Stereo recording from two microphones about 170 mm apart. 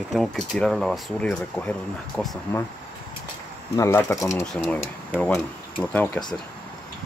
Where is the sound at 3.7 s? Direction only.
15° left (ahead or behind).